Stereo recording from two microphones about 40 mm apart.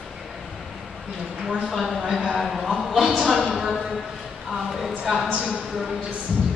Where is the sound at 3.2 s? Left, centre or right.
Centre.